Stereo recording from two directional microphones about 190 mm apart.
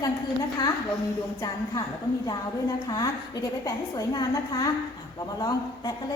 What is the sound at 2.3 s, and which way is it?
A woman's voice, 20° left (ahead or behind).